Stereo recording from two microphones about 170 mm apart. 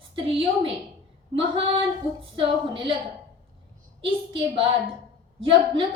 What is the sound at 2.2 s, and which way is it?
Speech, 30° right (ahead or behind).